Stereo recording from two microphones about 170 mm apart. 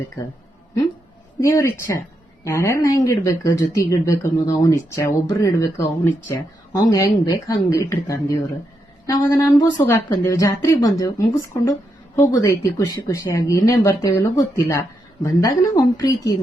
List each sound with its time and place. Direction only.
1.4 s speech: 15° left (ahead or behind)